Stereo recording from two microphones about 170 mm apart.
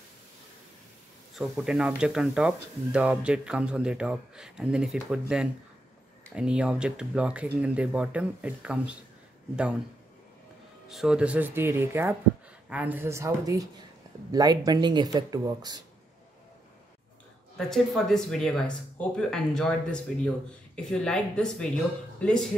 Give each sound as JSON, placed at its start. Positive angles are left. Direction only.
{"t": 1.3, "sound": "speech", "side_deg": 0}
{"t": 10.9, "sound": "speech", "side_deg": -5}
{"t": 17.6, "sound": "speech", "side_deg": 0}